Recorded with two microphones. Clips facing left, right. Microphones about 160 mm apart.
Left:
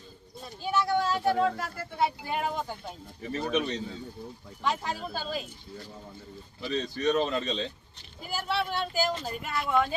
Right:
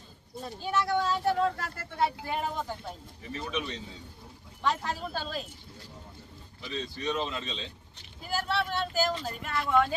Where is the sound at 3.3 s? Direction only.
50° left (ahead or behind).